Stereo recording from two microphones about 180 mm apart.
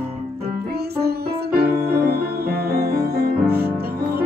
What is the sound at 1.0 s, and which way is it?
Music, 60° right (ahead or behind).